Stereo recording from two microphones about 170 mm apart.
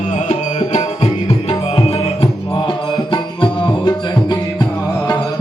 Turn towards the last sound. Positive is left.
turn(degrees=25)  # may be behind; listen again after turning